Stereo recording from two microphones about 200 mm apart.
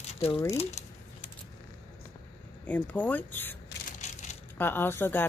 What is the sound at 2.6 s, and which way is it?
Speech, 10° left (ahead or behind).